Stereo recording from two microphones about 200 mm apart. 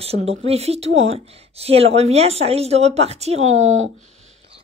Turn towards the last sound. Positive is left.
turn(degrees=-85)